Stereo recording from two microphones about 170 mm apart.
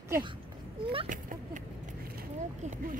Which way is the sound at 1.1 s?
50° right (ahead or behind).